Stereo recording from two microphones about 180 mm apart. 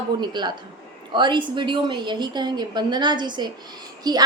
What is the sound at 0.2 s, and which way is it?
A woman's voice, 25° right (ahead or behind).